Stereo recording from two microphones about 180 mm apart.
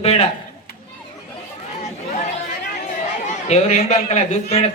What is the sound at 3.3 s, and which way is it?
A man's voice, 40° left (ahead or behind).